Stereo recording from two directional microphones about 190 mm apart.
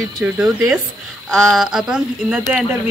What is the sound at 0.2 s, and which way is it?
Speech, 5° right (ahead or behind).